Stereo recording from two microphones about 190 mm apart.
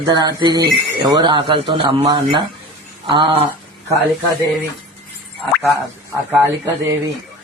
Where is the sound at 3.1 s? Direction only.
25° right (ahead or behind).